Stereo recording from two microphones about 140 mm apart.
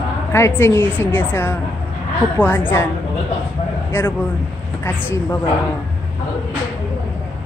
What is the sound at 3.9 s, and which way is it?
Speech, 15° left (ahead or behind).